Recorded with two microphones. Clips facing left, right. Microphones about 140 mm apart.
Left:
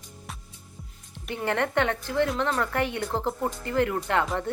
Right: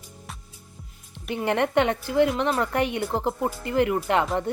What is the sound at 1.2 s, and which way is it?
A woman's voice, 15° right (ahead or behind).